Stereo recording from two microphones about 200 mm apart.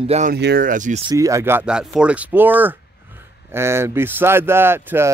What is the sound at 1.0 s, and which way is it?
Speech, 15° right (ahead or behind).